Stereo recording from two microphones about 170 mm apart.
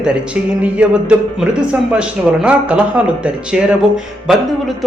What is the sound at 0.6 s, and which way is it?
Speech, 5° right (ahead or behind).